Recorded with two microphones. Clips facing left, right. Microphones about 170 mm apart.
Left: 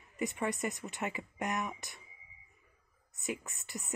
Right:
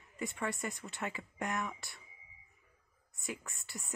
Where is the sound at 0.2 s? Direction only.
20° left (ahead or behind).